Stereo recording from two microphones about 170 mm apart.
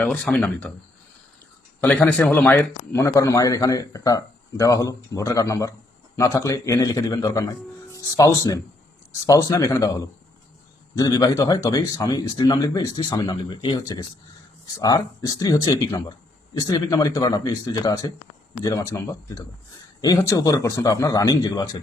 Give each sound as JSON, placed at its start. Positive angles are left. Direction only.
{"t": 0.0, "sound": "speech", "side_deg": 10}
{"t": 1.8, "sound": "a man's voice", "side_deg": 10}